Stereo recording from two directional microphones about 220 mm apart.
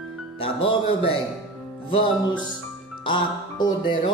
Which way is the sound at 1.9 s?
20° left (ahead or behind).